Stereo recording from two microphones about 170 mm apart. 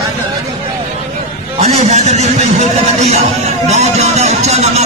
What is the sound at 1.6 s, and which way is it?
Speech, 40° right (ahead or behind).